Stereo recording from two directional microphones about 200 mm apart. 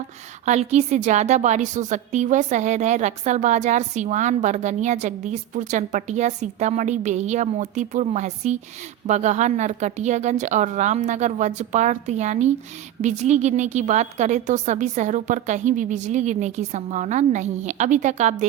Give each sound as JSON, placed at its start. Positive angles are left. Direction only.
{"t": 0.4, "sound": "a woman's voice", "side_deg": -35}